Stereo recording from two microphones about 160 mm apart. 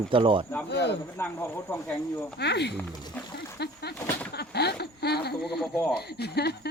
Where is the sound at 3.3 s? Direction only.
90° left.